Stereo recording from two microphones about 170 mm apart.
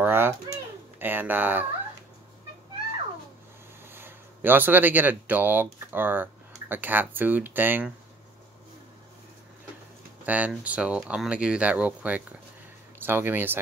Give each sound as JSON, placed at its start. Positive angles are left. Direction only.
{"t": 0.0, "sound": "babbling", "side_deg": -15}
{"t": 0.9, "sound": "speech", "side_deg": -10}
{"t": 3.9, "sound": "speech", "side_deg": -10}
{"t": 10.2, "sound": "speech", "side_deg": -10}